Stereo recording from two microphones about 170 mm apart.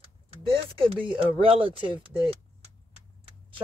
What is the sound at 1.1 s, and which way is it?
Speech, 30° right (ahead or behind).